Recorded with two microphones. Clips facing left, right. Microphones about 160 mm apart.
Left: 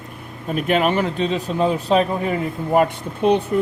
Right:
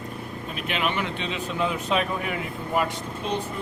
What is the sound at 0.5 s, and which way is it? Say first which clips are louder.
Speech: left 9 dB; 45° left (ahead or behind).